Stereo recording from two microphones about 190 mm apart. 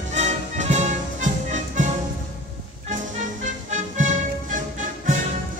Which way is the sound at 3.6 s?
40° right (ahead or behind).